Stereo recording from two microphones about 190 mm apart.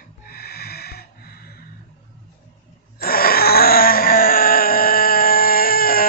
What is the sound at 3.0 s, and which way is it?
Wail, 50° left (ahead or behind).